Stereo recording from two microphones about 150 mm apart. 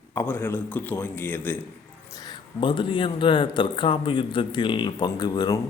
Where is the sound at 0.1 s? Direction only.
15° left (ahead or behind).